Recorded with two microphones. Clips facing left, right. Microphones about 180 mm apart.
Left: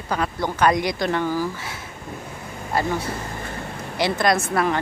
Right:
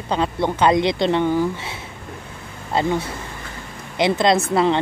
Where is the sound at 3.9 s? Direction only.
20° right (ahead or behind).